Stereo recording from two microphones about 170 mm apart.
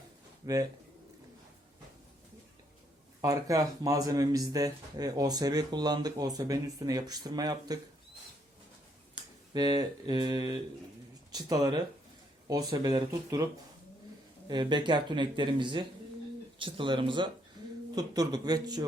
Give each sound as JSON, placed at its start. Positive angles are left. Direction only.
{"t": 0.4, "sound": "speech", "side_deg": -20}
{"t": 3.2, "sound": "speech", "side_deg": -20}
{"t": 9.5, "sound": "speech", "side_deg": -25}
{"t": 14.4, "sound": "speech", "side_deg": -25}